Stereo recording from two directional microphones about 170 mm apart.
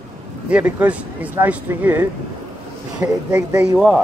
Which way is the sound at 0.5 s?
5° right (ahead or behind).